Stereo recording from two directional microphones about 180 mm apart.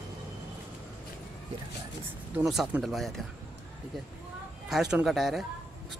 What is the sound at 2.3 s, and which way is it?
Speech, centre (ahead or behind).